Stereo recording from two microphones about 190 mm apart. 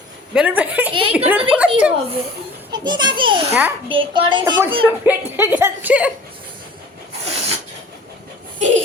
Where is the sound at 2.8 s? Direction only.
25° right (ahead or behind).